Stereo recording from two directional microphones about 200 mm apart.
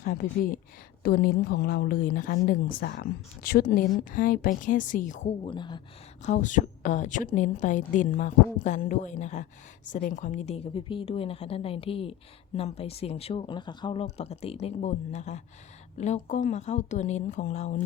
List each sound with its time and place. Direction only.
0.0 s a woman's voice: 45° left (ahead or behind)
5.5 s a woman's voice: 25° left (ahead or behind)
6.2 s a woman's voice: 40° left (ahead or behind)